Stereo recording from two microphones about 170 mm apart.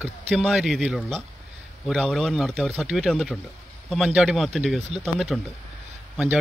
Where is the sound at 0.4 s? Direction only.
Centre (ahead or behind).